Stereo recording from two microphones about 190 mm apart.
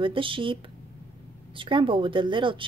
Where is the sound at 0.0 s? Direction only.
25° right (ahead or behind).